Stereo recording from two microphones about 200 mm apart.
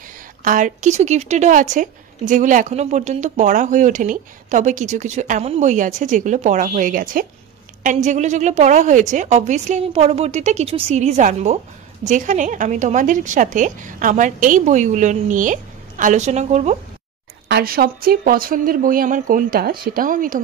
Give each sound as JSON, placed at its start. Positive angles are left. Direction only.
{"t": 0.4, "sound": "a woman's voice", "side_deg": -40}
{"t": 17.5, "sound": "speech", "side_deg": -50}